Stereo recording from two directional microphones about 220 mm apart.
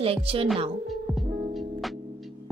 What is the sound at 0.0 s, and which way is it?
Speech, 25° right (ahead or behind).